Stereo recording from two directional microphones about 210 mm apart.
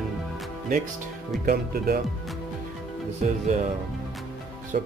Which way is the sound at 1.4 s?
45° right (ahead or behind).